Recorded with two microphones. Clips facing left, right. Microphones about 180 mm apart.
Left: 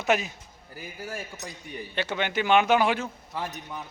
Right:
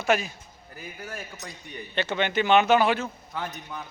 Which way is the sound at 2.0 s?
10° left (ahead or behind).